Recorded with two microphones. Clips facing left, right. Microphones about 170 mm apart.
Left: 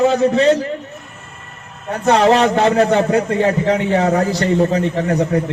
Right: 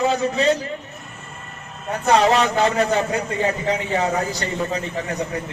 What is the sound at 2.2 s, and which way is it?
A man's voice, 65° left (ahead or behind).